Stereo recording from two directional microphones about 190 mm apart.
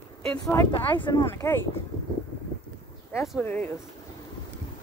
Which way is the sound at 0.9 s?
25° left (ahead or behind).